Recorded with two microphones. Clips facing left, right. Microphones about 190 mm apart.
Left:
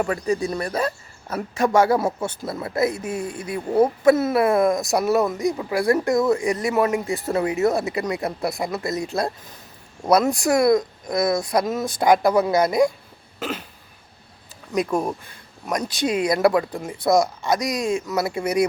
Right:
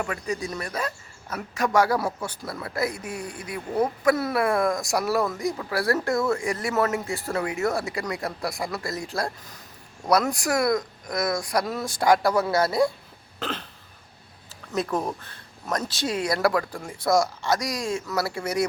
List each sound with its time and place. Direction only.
0.0 s speech: 35° left (ahead or behind); by 12.9 s 15° left (ahead or behind)
13.4 s hiccup: 10° left (ahead or behind)
14.7 s speech: 10° left (ahead or behind)